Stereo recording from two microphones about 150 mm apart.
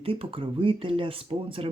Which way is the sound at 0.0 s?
40° right (ahead or behind).